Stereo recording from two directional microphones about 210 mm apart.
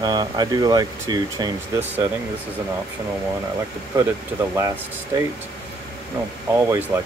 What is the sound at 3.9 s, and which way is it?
Speech, 15° right (ahead or behind).